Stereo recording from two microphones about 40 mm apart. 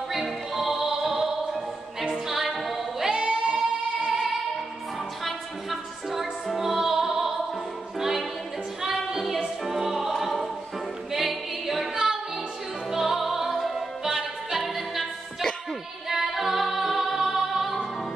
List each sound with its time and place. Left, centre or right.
0.1 s music: centre
2.2 s a capella: centre
3.1 s singing: right
5.2 s music: centre
11.1 s a capella: centre
12.9 s music: centre